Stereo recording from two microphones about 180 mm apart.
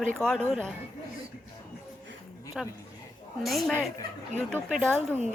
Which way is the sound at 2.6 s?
Centre (ahead or behind).